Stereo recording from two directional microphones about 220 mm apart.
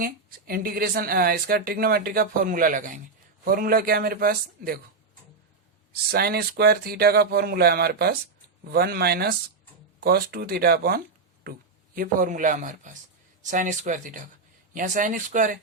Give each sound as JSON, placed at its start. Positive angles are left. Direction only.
{"t": 0.0, "sound": "a woman's voice", "side_deg": -40}
{"t": 5.9, "sound": "a woman's voice", "side_deg": -45}